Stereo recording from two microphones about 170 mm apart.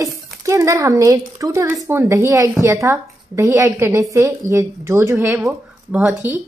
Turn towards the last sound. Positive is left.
turn(degrees=-10)  # may be behind; listen again after turning